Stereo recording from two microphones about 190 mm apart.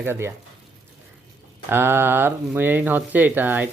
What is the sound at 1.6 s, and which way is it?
Speech, 10° right (ahead or behind).